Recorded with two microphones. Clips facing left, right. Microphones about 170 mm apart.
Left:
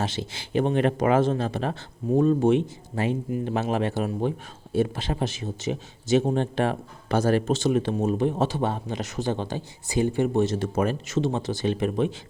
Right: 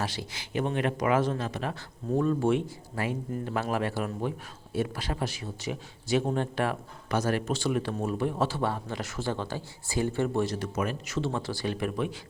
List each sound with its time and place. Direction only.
0.0 s a man's voice: 25° left (ahead or behind)